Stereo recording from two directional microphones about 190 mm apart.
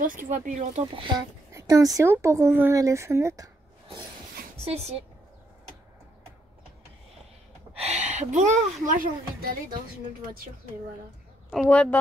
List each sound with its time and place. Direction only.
0.3 s speech: 40° right (ahead or behind)
0.9 s speech: 20° right (ahead or behind)
7.7 s speech: 35° right (ahead or behind)
11.5 s speech: 5° left (ahead or behind)